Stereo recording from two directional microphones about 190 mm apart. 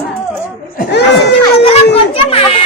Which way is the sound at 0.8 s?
60° left (ahead or behind).